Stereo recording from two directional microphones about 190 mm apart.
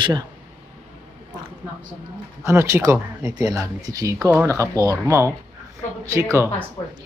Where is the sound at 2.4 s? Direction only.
15° right (ahead or behind).